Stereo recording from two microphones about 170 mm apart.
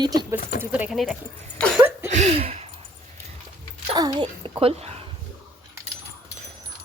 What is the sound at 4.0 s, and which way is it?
A child's voice, 25° right (ahead or behind).